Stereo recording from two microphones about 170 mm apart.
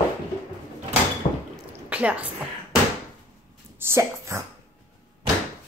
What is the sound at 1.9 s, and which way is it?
Speech, 10° right (ahead or behind).